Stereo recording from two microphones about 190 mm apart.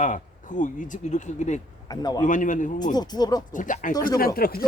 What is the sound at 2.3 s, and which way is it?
Speech, 45° left (ahead or behind).